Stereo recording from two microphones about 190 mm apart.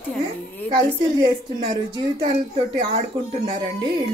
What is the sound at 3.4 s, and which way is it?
Speech, 20° right (ahead or behind).